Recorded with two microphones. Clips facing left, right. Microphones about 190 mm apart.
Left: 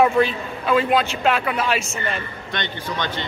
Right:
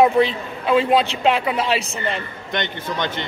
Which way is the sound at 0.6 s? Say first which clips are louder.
Right 2 dB; 25° right (ahead or behind).